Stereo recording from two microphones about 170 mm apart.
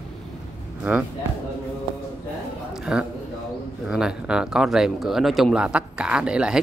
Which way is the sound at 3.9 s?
5° right (ahead or behind).